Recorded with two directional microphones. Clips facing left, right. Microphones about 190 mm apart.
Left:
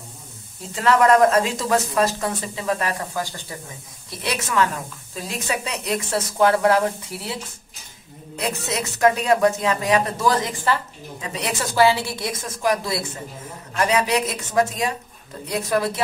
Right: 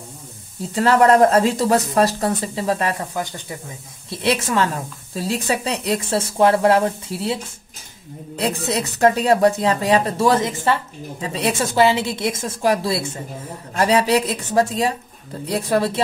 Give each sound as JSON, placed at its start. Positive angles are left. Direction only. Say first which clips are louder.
{"t": 0.7, "sound": "a woman's voice", "louder": "right 2 dB", "side_deg": -35}
{"t": 8.4, "sound": "a woman's voice", "louder": "right 4 dB", "side_deg": -30}